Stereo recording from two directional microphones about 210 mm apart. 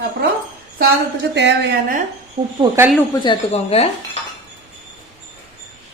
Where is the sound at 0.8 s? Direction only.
55° right (ahead or behind).